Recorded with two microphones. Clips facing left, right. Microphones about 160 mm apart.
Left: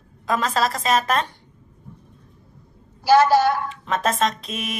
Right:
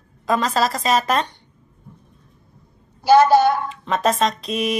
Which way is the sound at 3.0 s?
20° right (ahead or behind).